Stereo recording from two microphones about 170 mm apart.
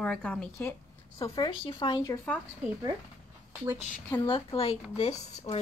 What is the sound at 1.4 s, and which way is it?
Speech, 30° left (ahead or behind).